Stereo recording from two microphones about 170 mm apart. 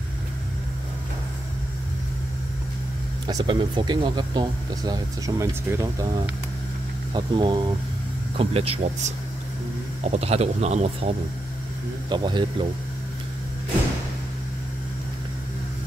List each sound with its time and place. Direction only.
3.3 s speech: 25° right (ahead or behind)
7.2 s speech: 30° right (ahead or behind)
12.1 s speech: 25° right (ahead or behind)